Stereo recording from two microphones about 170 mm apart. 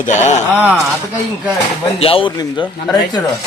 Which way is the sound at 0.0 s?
45° left (ahead or behind).